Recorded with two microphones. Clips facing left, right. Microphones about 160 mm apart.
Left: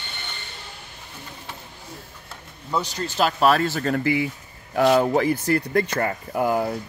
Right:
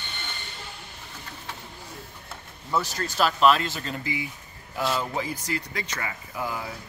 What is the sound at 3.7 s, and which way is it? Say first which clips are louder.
Speech: left 10 dB; 60° left (ahead or behind).